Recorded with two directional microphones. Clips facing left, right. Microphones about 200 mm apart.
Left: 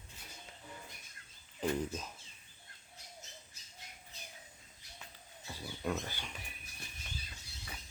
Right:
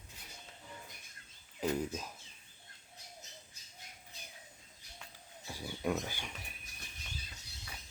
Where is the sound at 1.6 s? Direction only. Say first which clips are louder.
Even; 10° right (ahead or behind).